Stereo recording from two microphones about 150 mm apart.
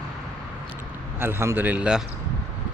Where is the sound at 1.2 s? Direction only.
15° right (ahead or behind).